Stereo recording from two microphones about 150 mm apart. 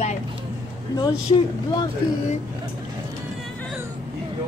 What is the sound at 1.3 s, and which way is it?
Speech, 35° left (ahead or behind).